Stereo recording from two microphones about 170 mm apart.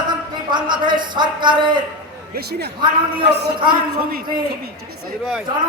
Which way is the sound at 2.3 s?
70° right (ahead or behind).